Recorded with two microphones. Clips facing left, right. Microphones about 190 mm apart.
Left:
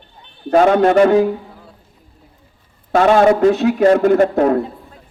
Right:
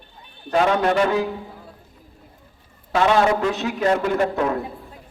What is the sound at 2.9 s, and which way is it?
A man's voice, 45° left (ahead or behind).